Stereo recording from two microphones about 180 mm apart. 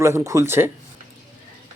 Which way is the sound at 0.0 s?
15° right (ahead or behind).